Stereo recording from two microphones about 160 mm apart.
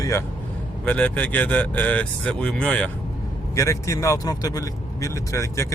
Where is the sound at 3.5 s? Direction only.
20° left (ahead or behind).